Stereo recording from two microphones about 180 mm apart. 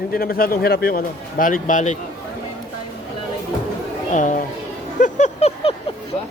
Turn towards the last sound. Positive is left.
turn(degrees=35)  # may be behind; listen again after turning